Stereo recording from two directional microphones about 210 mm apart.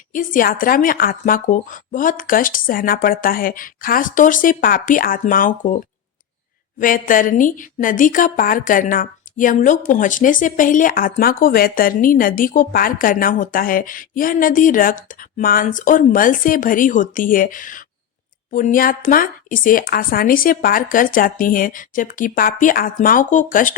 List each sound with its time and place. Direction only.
0.1 s a woman's voice: 40° left (ahead or behind)